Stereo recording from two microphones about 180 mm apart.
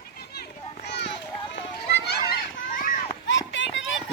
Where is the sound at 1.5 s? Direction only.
70° left (ahead or behind).